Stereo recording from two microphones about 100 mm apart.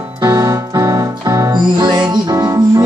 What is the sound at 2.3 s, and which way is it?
Music, 35° right (ahead or behind).